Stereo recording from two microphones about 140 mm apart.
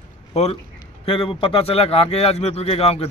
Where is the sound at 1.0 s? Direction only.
40° left (ahead or behind).